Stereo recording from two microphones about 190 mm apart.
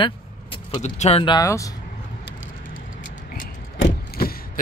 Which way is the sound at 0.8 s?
35° left (ahead or behind).